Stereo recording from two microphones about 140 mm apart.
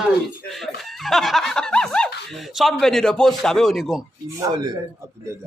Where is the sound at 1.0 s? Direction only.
Centre (ahead or behind).